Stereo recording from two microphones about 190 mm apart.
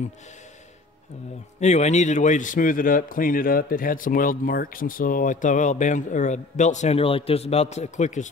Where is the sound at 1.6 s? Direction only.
35° left (ahead or behind).